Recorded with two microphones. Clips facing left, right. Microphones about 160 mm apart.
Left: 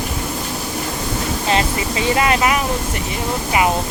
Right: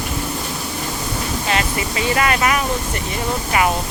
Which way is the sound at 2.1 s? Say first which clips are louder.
Left 1 dB; 20° left (ahead or behind).